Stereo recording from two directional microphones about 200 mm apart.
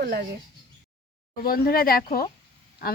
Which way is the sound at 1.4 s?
50° left (ahead or behind).